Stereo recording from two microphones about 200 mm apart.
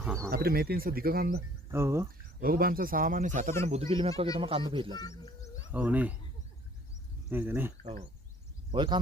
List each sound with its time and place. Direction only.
0.0 s speech: 5° right (ahead or behind)
0.3 s speech: 50° right (ahead or behind)
1.7 s speech: 15° right (ahead or behind)
2.4 s speech: 50° right (ahead or behind); by 4.9 s 25° right (ahead or behind)
4.9 s speech: 20° left (ahead or behind)
5.7 s speech: 5° right (ahead or behind)
7.3 s speech: 10° right (ahead or behind)
8.7 s speech: 25° right (ahead or behind)